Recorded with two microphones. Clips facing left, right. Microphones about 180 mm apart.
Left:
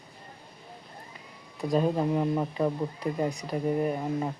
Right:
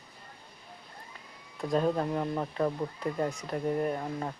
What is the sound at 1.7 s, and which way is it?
Speech, 10° left (ahead or behind).